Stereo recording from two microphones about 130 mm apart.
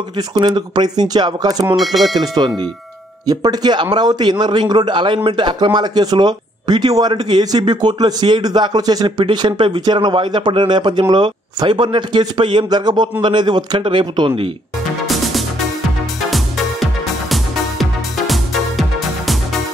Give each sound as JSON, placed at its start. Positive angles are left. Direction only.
{"t": 0.5, "sound": "a man's voice", "side_deg": -30}
{"t": 15.0, "sound": "music", "side_deg": 0}